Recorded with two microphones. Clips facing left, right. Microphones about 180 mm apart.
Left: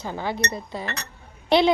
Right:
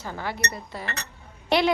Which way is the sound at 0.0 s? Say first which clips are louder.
Left 4 dB; 20° left (ahead or behind).